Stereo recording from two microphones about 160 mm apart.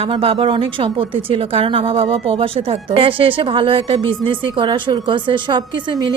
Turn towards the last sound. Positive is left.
turn(degrees=-30)  # may be behind; listen again after turning